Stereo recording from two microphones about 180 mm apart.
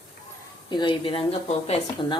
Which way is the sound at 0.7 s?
25° left (ahead or behind).